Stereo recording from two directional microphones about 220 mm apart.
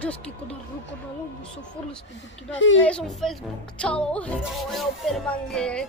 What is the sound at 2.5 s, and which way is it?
Speech, 60° left (ahead or behind).